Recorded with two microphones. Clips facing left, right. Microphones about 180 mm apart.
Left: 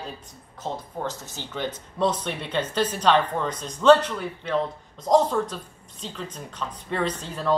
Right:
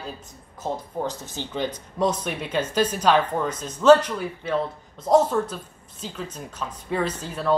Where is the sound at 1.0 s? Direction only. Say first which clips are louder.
Right 2 dB; 15° right (ahead or behind).